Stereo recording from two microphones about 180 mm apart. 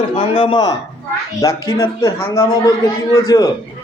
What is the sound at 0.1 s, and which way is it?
A man's voice, 30° left (ahead or behind).